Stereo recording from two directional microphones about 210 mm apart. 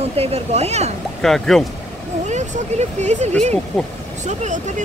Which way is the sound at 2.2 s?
35° right (ahead or behind).